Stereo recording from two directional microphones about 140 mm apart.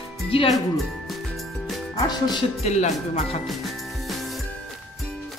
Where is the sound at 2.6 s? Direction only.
55° left (ahead or behind).